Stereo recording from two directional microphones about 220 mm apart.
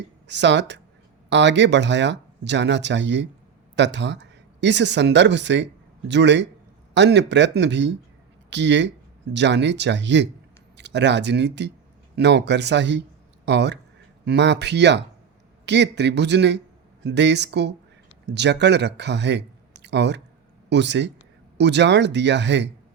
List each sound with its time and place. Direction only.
0.3 s speech: 55° right (ahead or behind)